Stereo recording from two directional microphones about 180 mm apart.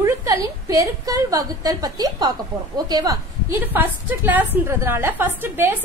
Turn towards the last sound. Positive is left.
turn(degrees=-10)  # may be behind; listen again after turning